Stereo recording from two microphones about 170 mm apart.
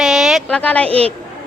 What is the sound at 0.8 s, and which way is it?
Speech, 35° right (ahead or behind).